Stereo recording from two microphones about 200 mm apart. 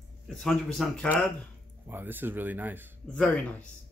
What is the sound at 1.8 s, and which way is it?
Speech, 10° right (ahead or behind).